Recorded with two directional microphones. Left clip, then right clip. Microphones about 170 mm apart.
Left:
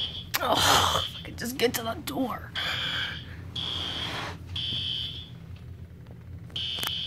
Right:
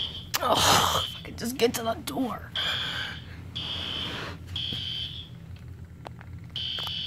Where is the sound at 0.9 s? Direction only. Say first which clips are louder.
Even; 20° right (ahead or behind).